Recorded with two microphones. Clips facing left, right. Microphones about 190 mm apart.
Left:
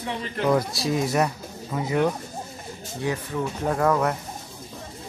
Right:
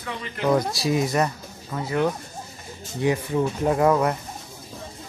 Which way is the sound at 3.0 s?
15° right (ahead or behind).